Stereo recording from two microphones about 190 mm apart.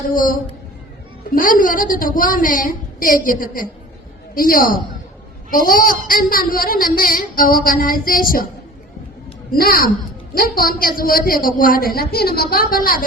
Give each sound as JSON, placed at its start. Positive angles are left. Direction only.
{"t": 0.1, "sound": "speech", "side_deg": 45}
{"t": 1.4, "sound": "speech", "side_deg": 45}
{"t": 9.5, "sound": "speech", "side_deg": 50}